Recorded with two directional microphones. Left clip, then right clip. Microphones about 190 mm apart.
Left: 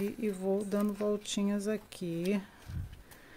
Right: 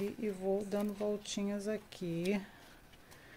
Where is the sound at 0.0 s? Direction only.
20° left (ahead or behind).